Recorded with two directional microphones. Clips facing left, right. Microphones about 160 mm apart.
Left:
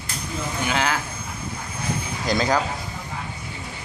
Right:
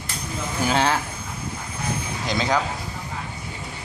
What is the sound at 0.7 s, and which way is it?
Speech, 30° right (ahead or behind).